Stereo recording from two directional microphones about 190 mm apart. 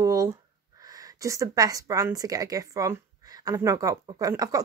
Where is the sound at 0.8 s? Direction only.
20° right (ahead or behind).